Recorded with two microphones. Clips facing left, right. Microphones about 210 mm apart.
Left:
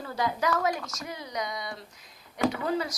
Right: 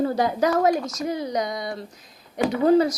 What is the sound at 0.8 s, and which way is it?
Speech, 20° right (ahead or behind).